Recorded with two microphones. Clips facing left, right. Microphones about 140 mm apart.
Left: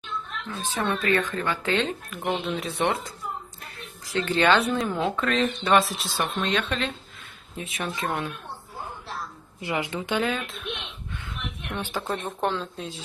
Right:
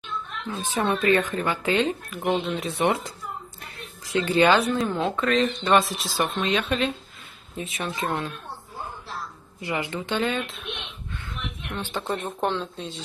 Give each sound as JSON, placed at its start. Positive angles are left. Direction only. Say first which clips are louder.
{"t": 0.8, "sound": "speech", "louder": "right 3 dB", "side_deg": -20}
{"t": 4.1, "sound": "speech", "louder": "right 2 dB", "side_deg": -10}
{"t": 9.6, "sound": "a woman's voice", "louder": "even", "side_deg": 15}
{"t": 10.2, "sound": "speech", "louder": "right 1 dB", "side_deg": 0}
{"t": 11.7, "sound": "speech", "louder": "right 1 dB", "side_deg": 5}